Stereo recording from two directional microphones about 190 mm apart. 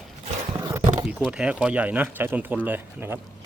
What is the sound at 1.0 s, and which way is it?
Speech, 5° right (ahead or behind).